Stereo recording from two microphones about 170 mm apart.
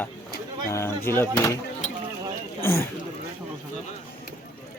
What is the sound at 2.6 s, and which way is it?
Speech, 15° left (ahead or behind).